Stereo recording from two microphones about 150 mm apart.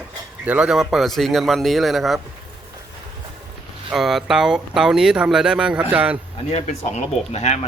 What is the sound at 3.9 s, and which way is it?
Speech, centre (ahead or behind).